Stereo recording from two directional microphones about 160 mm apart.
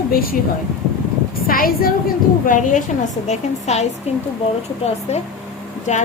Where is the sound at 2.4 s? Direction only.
55° left (ahead or behind).